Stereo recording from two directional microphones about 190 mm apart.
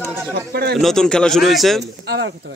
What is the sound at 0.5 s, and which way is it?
Speech, 55° right (ahead or behind).